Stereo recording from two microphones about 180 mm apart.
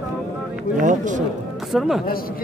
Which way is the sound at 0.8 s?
45° right (ahead or behind).